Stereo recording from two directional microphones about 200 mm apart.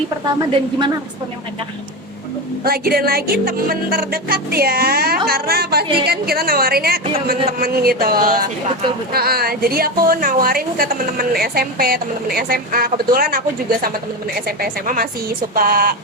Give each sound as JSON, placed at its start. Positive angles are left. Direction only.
{"t": 2.6, "sound": "a woman's voice", "side_deg": -50}